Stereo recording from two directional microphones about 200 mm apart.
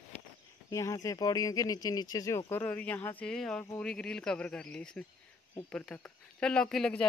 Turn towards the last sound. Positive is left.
turn(degrees=5)  # may be behind; listen again after turning